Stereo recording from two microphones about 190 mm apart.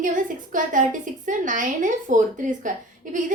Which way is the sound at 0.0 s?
45° right (ahead or behind).